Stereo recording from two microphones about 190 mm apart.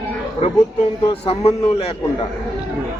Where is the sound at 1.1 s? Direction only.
30° left (ahead or behind).